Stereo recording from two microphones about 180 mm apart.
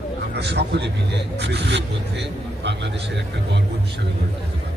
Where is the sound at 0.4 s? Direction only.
70° right (ahead or behind).